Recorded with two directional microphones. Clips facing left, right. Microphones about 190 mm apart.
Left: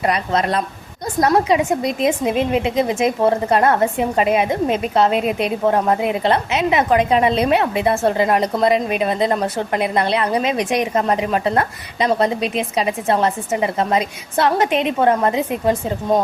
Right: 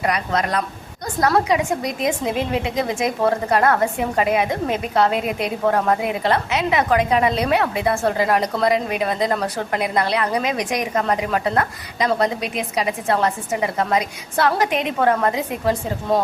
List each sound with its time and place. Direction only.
0.0 s a woman's voice: 25° left (ahead or behind)